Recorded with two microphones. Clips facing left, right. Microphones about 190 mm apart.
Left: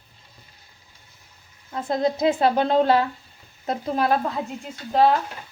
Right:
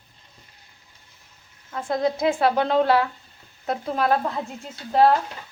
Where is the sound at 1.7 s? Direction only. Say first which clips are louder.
Left 1 dB; 25° left (ahead or behind).